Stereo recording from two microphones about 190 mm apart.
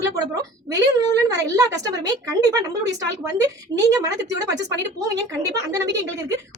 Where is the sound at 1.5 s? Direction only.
20° right (ahead or behind).